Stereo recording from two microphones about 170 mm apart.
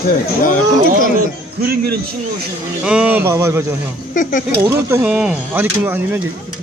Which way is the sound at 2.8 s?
5° right (ahead or behind).